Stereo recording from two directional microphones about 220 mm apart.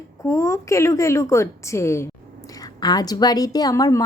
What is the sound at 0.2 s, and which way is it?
A woman's voice, 15° left (ahead or behind).